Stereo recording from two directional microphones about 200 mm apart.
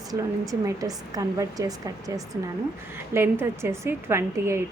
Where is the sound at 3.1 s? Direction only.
10° right (ahead or behind).